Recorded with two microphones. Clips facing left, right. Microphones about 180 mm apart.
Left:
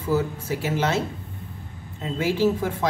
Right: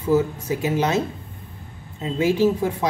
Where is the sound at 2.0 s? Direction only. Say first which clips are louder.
Right 3 dB; 15° right (ahead or behind).